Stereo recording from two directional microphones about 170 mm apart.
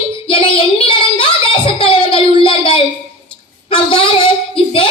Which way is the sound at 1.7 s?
30° left (ahead or behind).